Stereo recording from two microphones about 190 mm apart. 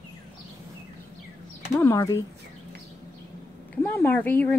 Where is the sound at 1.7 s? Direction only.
15° left (ahead or behind).